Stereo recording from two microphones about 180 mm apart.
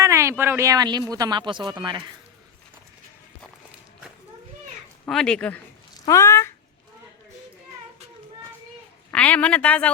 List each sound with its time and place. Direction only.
0.0 s speech: 15° right (ahead or behind)
5.0 s speech: 5° left (ahead or behind)
6.1 s a woman's voice: 15° left (ahead or behind)
9.1 s a woman's voice: 5° left (ahead or behind)